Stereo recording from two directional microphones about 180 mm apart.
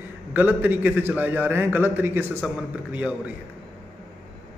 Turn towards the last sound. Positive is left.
turn(degrees=-10)  # may be behind; listen again after turning